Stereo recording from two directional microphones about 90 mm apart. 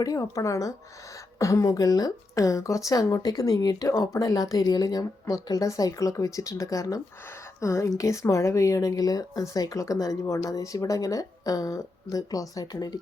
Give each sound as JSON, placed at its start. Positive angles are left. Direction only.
{"t": 0.0, "sound": "a woman's voice", "side_deg": 40}